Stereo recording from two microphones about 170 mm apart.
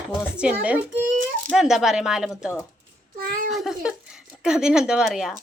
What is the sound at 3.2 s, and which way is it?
Speech, 60° right (ahead or behind).